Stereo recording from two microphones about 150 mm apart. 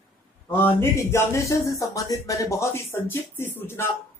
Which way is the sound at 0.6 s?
15° left (ahead or behind).